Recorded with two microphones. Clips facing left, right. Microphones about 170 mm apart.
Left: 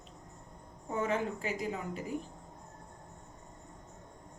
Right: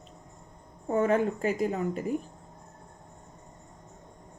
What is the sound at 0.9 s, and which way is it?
A woman's voice, 55° right (ahead or behind).